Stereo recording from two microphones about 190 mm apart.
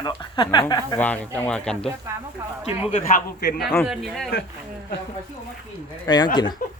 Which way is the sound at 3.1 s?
50° left (ahead or behind).